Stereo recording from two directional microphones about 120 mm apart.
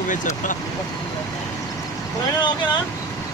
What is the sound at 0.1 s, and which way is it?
Speech, 90° left.